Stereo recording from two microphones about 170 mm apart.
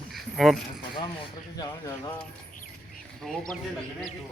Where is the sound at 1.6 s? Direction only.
20° left (ahead or behind).